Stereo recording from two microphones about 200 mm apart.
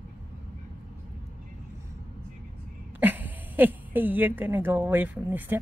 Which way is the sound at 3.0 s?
10° right (ahead or behind).